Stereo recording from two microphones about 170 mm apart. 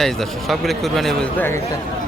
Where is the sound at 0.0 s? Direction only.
Centre (ahead or behind).